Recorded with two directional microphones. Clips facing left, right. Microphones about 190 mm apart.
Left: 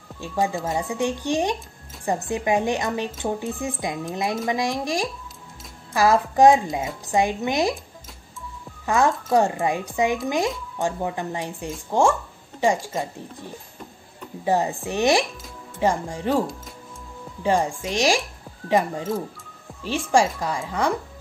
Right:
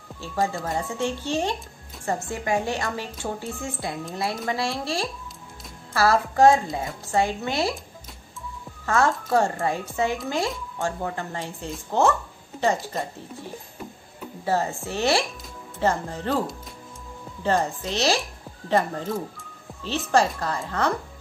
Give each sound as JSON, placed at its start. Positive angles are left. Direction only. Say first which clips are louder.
{"t": 0.2, "sound": "a woman's voice", "louder": "left 2 dB", "side_deg": 15}
{"t": 8.8, "sound": "speech", "louder": "left 2 dB", "side_deg": 15}
{"t": 14.4, "sound": "speech", "louder": "left 3 dB", "side_deg": 15}